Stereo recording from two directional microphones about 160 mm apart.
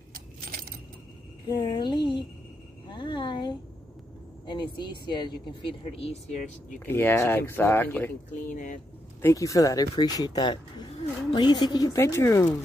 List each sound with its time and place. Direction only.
0.1 s keys jangling: 65° right (ahead or behind)
1.5 s speech: 30° left (ahead or behind)
5.0 s speech: 30° left (ahead or behind); by 6.8 s 45° left (ahead or behind)
6.9 s speech: 15° left (ahead or behind)
8.5 s speech: 55° left (ahead or behind)
9.2 s speech: 20° left (ahead or behind)